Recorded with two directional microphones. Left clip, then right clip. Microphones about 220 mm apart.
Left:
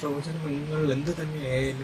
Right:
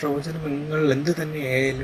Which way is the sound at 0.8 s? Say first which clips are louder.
Right 7 dB; 20° right (ahead or behind).